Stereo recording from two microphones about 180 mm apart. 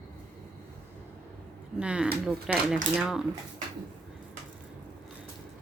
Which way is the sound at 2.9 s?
5° right (ahead or behind).